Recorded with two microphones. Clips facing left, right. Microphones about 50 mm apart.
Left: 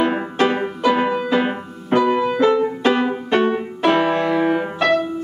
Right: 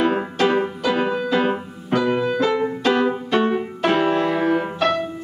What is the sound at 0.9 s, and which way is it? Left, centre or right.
Music, centre.